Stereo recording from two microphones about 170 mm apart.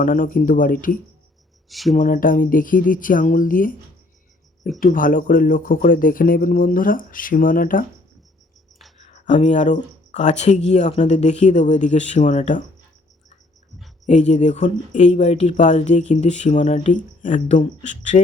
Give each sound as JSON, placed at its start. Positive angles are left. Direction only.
{"t": 0.0, "sound": "speech", "side_deg": 50}
{"t": 1.7, "sound": "speech", "side_deg": 0}
{"t": 2.0, "sound": "speech", "side_deg": 55}
{"t": 4.8, "sound": "speech", "side_deg": 55}
{"t": 9.2, "sound": "speech", "side_deg": 45}
{"t": 13.7, "sound": "a sound", "side_deg": 0}
{"t": 14.1, "sound": "speech", "side_deg": 45}